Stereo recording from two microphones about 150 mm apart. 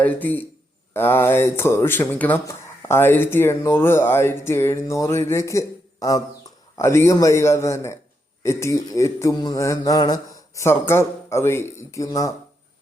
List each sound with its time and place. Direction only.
0.0 s speech: 10° left (ahead or behind)
8.4 s mantra: 20° left (ahead or behind)